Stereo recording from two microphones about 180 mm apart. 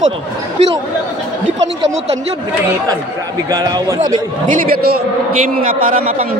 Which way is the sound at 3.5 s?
20° right (ahead or behind).